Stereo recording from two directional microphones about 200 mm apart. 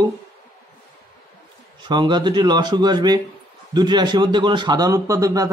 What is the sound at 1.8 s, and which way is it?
Speech, 20° right (ahead or behind).